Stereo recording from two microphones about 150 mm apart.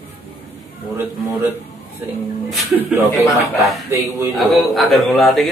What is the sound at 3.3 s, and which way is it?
A man's voice, centre (ahead or behind).